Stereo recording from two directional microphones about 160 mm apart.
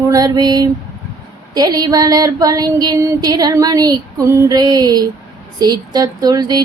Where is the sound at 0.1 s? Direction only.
25° right (ahead or behind).